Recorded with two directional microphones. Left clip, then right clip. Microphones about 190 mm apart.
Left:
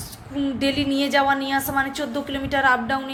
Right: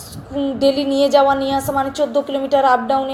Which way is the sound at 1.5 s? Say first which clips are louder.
Right 4 dB; 30° left (ahead or behind).